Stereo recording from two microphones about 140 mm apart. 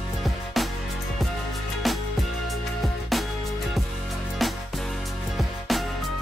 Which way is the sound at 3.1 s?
Centre (ahead or behind).